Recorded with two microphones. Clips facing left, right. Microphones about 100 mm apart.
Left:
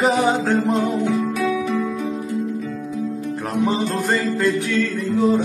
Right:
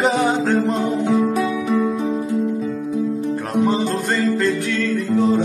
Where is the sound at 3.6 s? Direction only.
Centre (ahead or behind).